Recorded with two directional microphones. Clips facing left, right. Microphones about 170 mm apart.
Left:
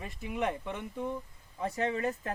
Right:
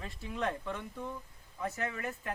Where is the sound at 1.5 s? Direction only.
30° left (ahead or behind).